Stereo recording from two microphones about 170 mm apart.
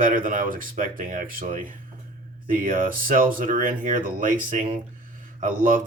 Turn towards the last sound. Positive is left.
turn(degrees=-50)  # may be behind; listen again after turning